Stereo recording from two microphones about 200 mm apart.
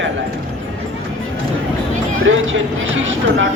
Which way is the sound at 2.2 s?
75° right (ahead or behind).